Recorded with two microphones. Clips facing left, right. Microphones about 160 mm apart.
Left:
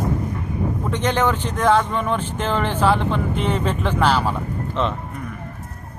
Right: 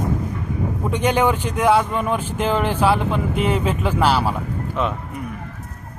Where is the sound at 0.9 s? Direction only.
15° right (ahead or behind).